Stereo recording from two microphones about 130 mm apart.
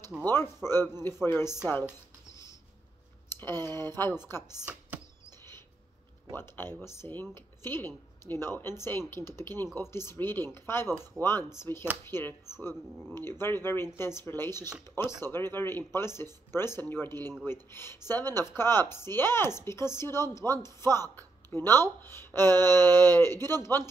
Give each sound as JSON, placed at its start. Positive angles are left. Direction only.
{"t": 0.2, "sound": "speech", "side_deg": 15}
{"t": 1.7, "sound": "a sound", "side_deg": 20}
{"t": 3.3, "sound": "speech", "side_deg": 15}
{"t": 6.3, "sound": "speech", "side_deg": 15}